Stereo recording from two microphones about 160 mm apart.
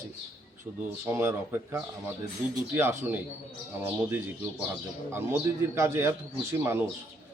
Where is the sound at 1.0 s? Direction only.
15° right (ahead or behind).